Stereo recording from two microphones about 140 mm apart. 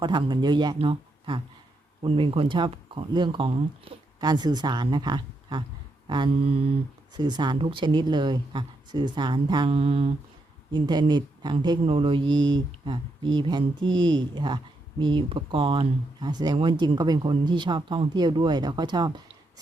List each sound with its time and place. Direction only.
0.0 s speech: 35° right (ahead or behind)
4.2 s speech: 30° right (ahead or behind)
9.6 s mantra: 45° right (ahead or behind)
10.7 s speech: 35° right (ahead or behind)